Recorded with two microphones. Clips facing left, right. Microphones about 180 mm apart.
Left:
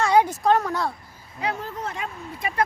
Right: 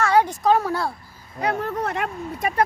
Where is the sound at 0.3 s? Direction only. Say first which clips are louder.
Right 1 dB; 5° right (ahead or behind).